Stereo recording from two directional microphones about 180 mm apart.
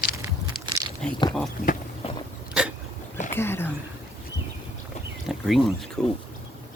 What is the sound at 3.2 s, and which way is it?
Speech, 15° left (ahead or behind).